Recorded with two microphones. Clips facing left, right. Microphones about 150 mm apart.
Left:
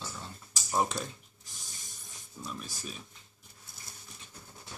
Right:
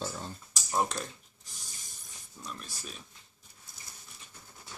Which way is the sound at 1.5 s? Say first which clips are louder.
Left 1 dB; centre (ahead or behind).